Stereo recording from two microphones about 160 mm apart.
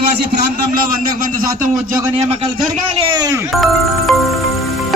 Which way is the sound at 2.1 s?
40° right (ahead or behind).